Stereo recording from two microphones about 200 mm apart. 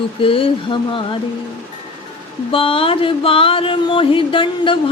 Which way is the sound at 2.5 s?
25° left (ahead or behind).